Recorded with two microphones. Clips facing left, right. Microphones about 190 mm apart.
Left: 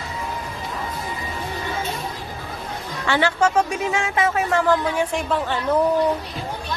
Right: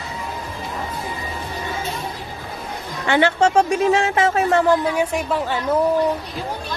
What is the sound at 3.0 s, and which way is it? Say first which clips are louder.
Speech: right 3 dB; 20° right (ahead or behind).